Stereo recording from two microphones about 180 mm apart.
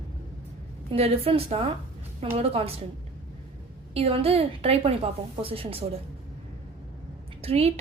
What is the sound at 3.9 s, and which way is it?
A woman's voice, 35° right (ahead or behind).